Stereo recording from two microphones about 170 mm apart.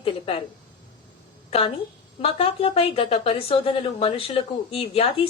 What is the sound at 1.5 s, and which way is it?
A woman's voice, 35° left (ahead or behind).